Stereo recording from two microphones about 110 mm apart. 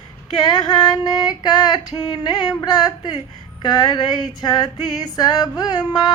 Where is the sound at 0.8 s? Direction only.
40° left (ahead or behind).